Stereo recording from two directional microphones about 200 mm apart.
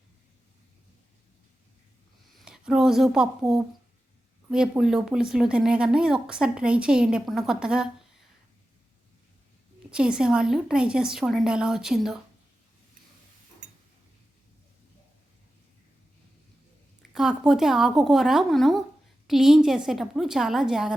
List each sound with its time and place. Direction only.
2.4 s speech: 5° right (ahead or behind)
9.9 s speech: 5° right (ahead or behind)
13.6 s tick-tock: 35° right (ahead or behind)
17.1 s speech: 5° right (ahead or behind)